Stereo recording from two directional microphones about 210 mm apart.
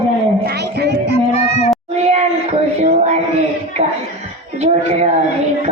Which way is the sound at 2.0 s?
30° right (ahead or behind).